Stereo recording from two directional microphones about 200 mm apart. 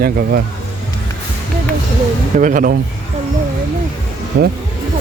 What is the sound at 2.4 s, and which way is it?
Speech, 40° right (ahead or behind).